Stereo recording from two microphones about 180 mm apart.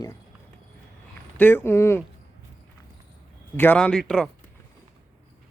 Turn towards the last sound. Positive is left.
turn(degrees=5)  # may be behind; listen again after turning